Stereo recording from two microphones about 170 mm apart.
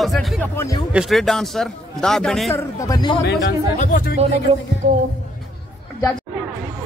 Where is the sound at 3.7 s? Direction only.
50° left (ahead or behind).